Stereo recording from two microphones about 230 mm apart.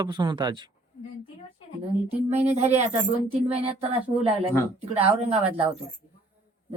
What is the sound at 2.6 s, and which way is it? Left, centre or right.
Speech, right.